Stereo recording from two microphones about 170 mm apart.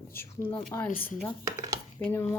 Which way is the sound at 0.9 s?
55° left (ahead or behind).